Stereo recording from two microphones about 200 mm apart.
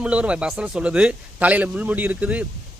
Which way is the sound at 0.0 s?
5° right (ahead or behind).